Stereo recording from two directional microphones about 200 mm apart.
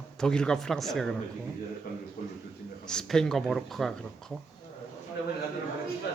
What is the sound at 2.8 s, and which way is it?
A man's voice, 5° left (ahead or behind).